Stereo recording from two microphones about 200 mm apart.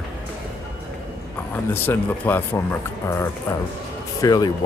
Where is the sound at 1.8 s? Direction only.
10° left (ahead or behind).